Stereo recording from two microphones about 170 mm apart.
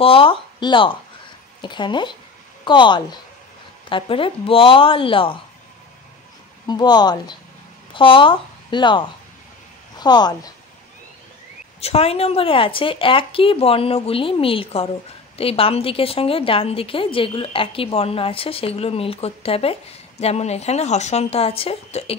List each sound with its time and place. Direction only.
0.0 s a woman's voice: 35° left (ahead or behind)
6.7 s a woman's voice: 25° left (ahead or behind)
11.8 s a woman's voice: 35° left (ahead or behind)